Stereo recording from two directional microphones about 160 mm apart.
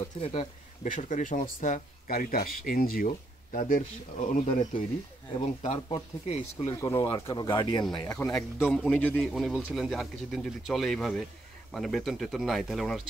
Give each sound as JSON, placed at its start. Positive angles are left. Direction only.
{"t": 0.2, "sound": "speech", "side_deg": 35}
{"t": 0.8, "sound": "speech", "side_deg": 55}
{"t": 5.6, "sound": "speech", "side_deg": 35}
{"t": 6.7, "sound": "speech", "side_deg": 20}
{"t": 8.3, "sound": "speech", "side_deg": 10}